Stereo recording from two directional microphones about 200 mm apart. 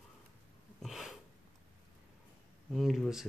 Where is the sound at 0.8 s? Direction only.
Centre (ahead or behind).